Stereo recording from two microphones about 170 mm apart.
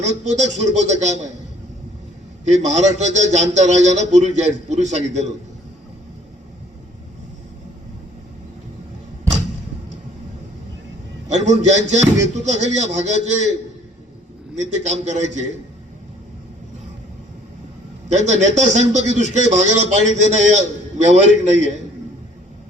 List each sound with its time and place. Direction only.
0.0 s a man's voice: 45° right (ahead or behind)
2.4 s a man's voice: 45° right (ahead or behind)
11.3 s a man's voice: 45° right (ahead or behind)
14.5 s a man's voice: 45° right (ahead or behind)
18.1 s a man's voice: 45° right (ahead or behind)